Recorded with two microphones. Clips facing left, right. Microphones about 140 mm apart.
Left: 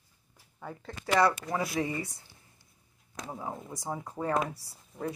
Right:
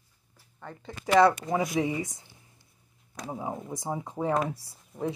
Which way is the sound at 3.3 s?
15° right (ahead or behind).